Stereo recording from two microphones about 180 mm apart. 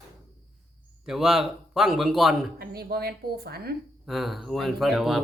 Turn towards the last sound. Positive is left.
turn(degrees=0)  # may be behind; listen again after turning